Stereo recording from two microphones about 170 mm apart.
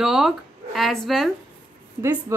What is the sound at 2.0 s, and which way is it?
Speech, 15° right (ahead or behind).